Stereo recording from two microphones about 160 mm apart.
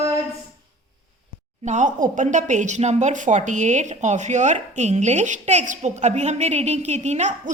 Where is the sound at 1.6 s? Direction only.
50° right (ahead or behind).